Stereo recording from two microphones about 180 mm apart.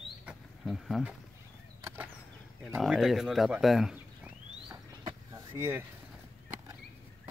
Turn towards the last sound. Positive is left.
turn(degrees=-15)  # may be behind; listen again after turning